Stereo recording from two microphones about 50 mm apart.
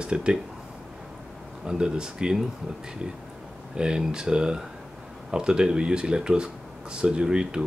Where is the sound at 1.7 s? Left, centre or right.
Centre.